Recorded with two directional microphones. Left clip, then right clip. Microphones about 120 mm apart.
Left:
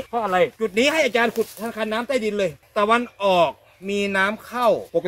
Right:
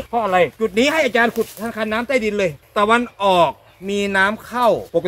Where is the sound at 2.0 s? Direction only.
5° left (ahead or behind).